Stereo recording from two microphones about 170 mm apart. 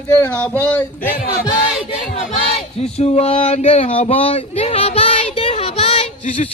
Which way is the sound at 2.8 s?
40° left (ahead or behind).